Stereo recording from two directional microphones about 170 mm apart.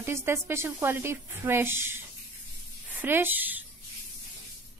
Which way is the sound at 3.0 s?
10° right (ahead or behind).